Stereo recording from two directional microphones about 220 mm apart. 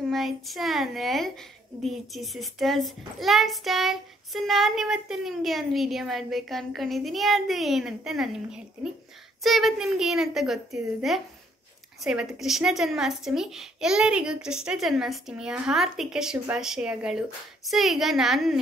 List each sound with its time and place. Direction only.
0.1 s a woman's voice: centre (ahead or behind)